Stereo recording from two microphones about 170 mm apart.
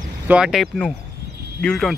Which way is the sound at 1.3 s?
70° right (ahead or behind).